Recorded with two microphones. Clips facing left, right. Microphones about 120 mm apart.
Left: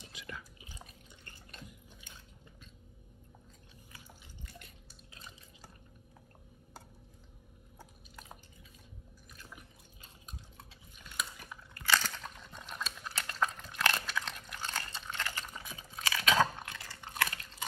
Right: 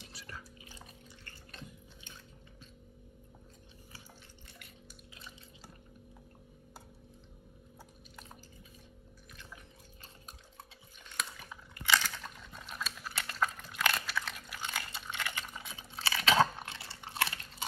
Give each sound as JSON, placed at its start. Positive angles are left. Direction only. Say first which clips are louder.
{"t": 0.1, "sound": "biting", "louder": "left 4 dB", "side_deg": -35}
{"t": 11.7, "sound": "a sound", "louder": "right 1 dB", "side_deg": -10}
{"t": 12.2, "sound": "dog", "louder": "even", "side_deg": 0}
{"t": 15.6, "sound": "chewing", "louder": "even", "side_deg": -25}
{"t": 16.5, "sound": "biting", "louder": "even", "side_deg": -25}